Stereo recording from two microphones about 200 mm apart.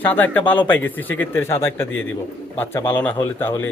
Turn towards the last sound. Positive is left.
turn(degrees=10)  # may be behind; listen again after turning